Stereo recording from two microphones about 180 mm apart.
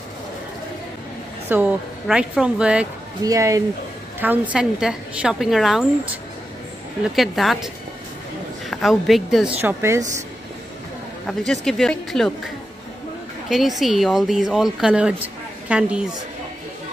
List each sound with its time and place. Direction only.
1.5 s speech: 5° right (ahead or behind)
3.3 s speech: 20° right (ahead or behind); by 5.9 s centre (ahead or behind)
7.2 s speech: centre (ahead or behind)
9.6 s a woman's voice: 10° right (ahead or behind)
11.2 s speech: 5° left (ahead or behind)
13.5 s speech: centre (ahead or behind)